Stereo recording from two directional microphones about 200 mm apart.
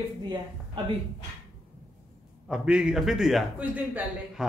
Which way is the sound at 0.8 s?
25° right (ahead or behind).